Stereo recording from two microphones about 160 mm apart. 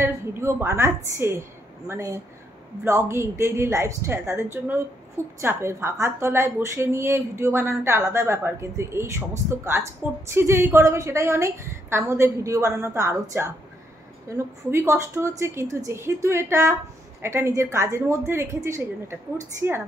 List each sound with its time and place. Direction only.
0.0 s a woman's voice: 15° right (ahead or behind)